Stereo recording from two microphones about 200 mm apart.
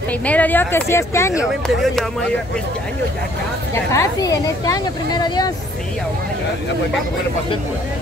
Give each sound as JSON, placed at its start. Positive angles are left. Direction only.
{"t": 0.2, "sound": "speech", "side_deg": 5}
{"t": 1.4, "sound": "speech", "side_deg": 0}
{"t": 3.7, "sound": "speech", "side_deg": 15}